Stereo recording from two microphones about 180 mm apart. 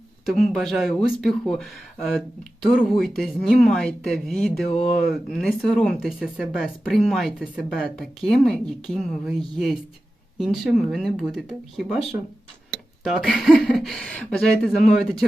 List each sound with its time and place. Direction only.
0.3 s speech: centre (ahead or behind)
4.7 s speech: 45° left (ahead or behind)
5.0 s speech: centre (ahead or behind)